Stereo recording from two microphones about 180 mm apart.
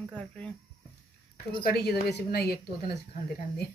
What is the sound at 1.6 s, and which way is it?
Speech, 60° left (ahead or behind).